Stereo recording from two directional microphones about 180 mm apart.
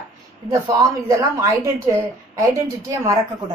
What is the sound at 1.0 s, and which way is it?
A woman's voice, 15° right (ahead or behind).